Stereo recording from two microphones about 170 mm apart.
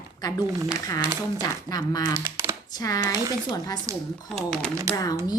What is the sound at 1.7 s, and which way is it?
Speech, 20° left (ahead or behind).